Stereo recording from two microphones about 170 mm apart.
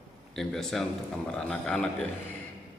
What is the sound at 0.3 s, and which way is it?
A man's voice, centre (ahead or behind).